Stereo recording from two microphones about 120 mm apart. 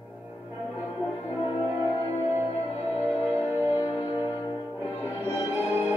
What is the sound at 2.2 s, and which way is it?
Music, 15° right (ahead or behind).